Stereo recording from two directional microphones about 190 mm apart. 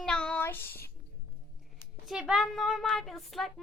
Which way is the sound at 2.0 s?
Centre (ahead or behind).